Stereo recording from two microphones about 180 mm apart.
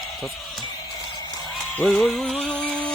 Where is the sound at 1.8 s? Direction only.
Centre (ahead or behind).